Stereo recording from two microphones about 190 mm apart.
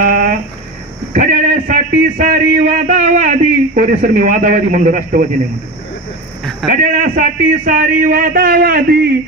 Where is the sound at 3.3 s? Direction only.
45° right (ahead or behind).